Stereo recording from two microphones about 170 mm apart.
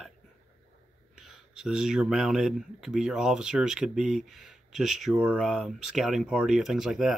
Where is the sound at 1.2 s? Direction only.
Centre (ahead or behind).